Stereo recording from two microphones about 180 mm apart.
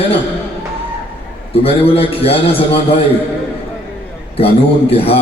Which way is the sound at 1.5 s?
35° left (ahead or behind).